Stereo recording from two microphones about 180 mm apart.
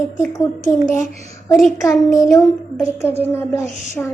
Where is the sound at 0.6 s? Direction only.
45° left (ahead or behind).